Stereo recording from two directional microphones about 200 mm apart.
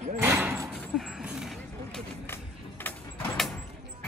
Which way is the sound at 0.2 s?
10° right (ahead or behind).